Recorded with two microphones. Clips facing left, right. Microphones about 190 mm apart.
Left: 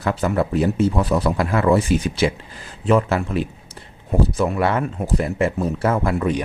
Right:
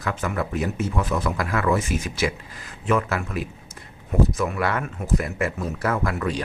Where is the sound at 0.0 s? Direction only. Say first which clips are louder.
Left 6 dB; 35° left (ahead or behind).